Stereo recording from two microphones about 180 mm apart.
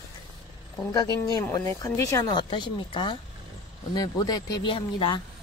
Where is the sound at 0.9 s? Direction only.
20° left (ahead or behind).